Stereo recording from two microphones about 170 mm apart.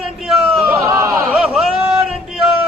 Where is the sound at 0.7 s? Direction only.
15° right (ahead or behind).